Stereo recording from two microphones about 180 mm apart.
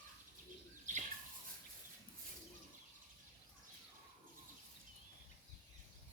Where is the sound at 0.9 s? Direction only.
45° right (ahead or behind).